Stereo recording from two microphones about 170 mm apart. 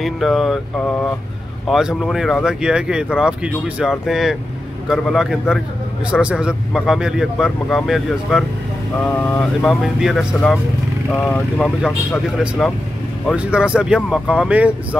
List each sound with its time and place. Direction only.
0.0 s a man's voice: centre (ahead or behind)
11.1 s speech: 10° left (ahead or behind)
11.5 s a man's voice: centre (ahead or behind)